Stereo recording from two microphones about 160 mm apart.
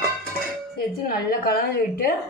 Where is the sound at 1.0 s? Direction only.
75° left (ahead or behind).